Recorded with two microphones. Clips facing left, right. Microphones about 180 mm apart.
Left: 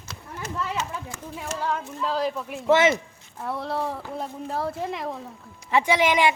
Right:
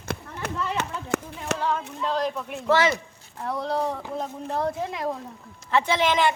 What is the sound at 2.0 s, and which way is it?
Speech, 5° left (ahead or behind).